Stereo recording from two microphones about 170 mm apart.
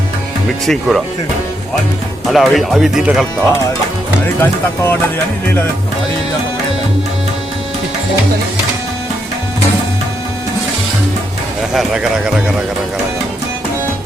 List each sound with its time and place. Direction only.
0.6 s speech: centre (ahead or behind)
2.2 s speech: centre (ahead or behind)
4.4 s speech: 10° left (ahead or behind)
11.7 s speech: 5° right (ahead or behind)